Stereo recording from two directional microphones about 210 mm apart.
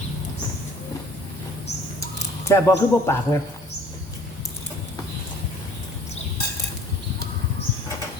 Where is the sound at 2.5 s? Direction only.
10° left (ahead or behind).